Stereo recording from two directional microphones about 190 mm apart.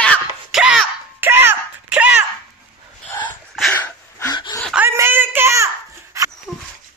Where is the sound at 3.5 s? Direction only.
5° left (ahead or behind).